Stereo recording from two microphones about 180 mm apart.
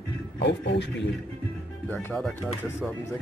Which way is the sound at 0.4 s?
75° left (ahead or behind).